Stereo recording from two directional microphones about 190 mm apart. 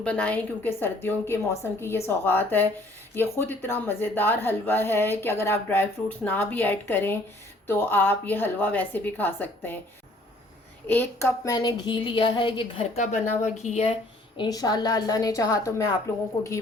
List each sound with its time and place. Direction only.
0.0 s a woman's voice: 5° left (ahead or behind)
10.8 s a woman's voice: 10° left (ahead or behind)